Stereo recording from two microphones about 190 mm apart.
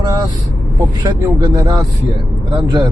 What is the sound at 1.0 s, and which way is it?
Speech, 20° right (ahead or behind).